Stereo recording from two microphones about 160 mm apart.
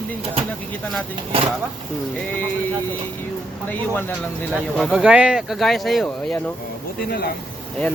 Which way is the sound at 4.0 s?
10° left (ahead or behind).